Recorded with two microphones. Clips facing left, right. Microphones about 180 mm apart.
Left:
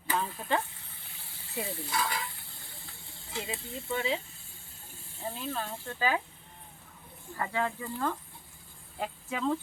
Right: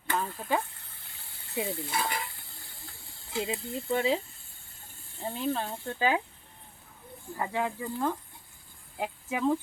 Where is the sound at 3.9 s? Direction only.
35° right (ahead or behind).